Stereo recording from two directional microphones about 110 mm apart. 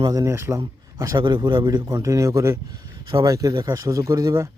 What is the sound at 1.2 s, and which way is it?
A man's voice, 45° right (ahead or behind).